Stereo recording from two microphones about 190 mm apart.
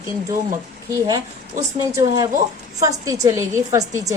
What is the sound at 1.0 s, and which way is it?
A woman's voice, 20° right (ahead or behind).